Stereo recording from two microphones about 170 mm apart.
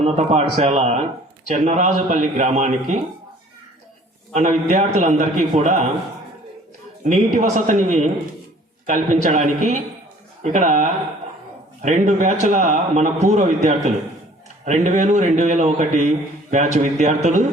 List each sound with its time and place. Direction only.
0.0 s a man's voice: 40° right (ahead or behind)
4.7 s a man's voice: 45° right (ahead or behind)
7.0 s a man's voice: 45° right (ahead or behind)